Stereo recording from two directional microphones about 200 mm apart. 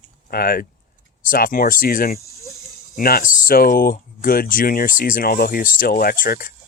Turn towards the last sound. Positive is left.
turn(degrees=45)  # may be behind; listen again after turning